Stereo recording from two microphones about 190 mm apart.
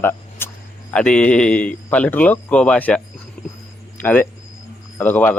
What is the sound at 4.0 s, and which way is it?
Speech, 10° left (ahead or behind).